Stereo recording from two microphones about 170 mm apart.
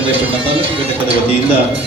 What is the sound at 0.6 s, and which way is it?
Speech, 35° right (ahead or behind).